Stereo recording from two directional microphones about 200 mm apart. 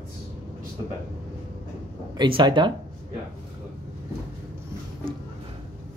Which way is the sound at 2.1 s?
20° right (ahead or behind).